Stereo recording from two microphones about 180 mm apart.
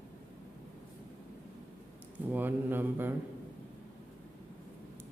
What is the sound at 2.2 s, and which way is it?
Speech, 10° right (ahead or behind).